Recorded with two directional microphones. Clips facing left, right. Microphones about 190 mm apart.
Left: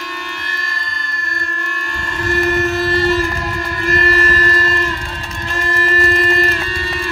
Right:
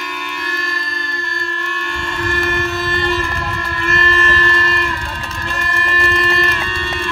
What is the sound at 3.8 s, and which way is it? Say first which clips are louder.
Music: left 2 dB; 40° left (ahead or behind).